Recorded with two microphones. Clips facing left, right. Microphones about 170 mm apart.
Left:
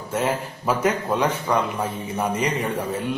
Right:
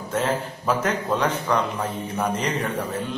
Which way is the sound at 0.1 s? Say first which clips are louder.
Even; 10° left (ahead or behind).